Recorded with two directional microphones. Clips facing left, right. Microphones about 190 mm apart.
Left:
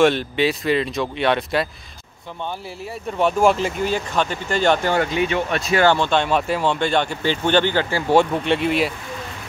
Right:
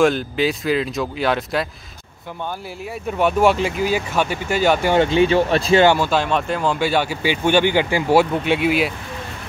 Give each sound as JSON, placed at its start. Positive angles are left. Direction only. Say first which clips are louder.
{"t": 0.0, "sound": "speech", "louder": "even", "side_deg": 0}
{"t": 3.1, "sound": "speech", "louder": "right 1 dB", "side_deg": -5}
{"t": 4.9, "sound": "speech", "louder": "right 5 dB", "side_deg": -25}
{"t": 5.9, "sound": "speech", "louder": "right 1 dB", "side_deg": -5}